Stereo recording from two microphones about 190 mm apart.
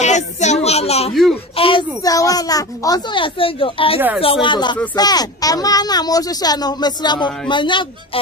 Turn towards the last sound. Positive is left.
turn(degrees=25)  # may be behind; listen again after turning